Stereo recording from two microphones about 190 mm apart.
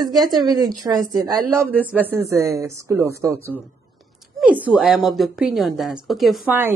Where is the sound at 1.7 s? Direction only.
10° right (ahead or behind).